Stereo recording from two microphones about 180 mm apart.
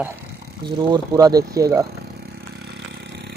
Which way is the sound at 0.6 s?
20° right (ahead or behind).